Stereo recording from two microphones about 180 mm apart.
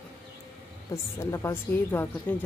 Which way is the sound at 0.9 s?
15° left (ahead or behind).